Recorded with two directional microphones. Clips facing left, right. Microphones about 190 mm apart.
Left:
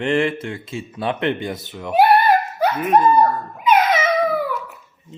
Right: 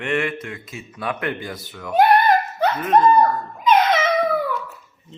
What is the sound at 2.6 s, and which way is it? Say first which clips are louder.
Dog: even; 10° left (ahead or behind).